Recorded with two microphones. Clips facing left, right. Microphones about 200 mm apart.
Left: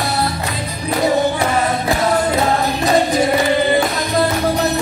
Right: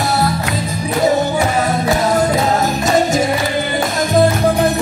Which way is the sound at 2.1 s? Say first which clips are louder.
Right 2 dB; 45° right (ahead or behind).